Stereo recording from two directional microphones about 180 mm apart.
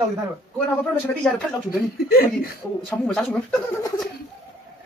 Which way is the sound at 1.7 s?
55° left (ahead or behind).